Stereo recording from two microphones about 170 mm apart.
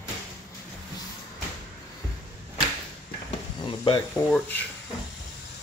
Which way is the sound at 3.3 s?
30° left (ahead or behind).